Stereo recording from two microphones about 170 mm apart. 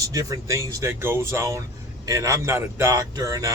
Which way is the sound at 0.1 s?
20° right (ahead or behind).